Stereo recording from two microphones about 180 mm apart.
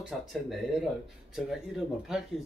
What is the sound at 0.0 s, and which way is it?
Speech, centre (ahead or behind).